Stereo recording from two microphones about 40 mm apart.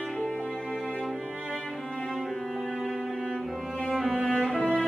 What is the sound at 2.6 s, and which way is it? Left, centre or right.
Music, centre.